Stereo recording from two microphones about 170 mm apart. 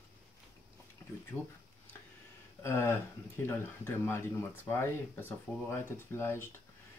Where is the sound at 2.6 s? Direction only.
15° left (ahead or behind).